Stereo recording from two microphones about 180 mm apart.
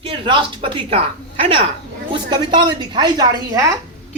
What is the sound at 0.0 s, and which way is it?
A woman's voice, 30° right (ahead or behind).